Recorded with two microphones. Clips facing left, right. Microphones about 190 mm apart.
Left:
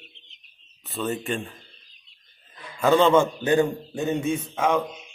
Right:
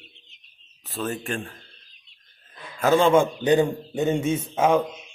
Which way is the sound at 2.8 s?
5° right (ahead or behind).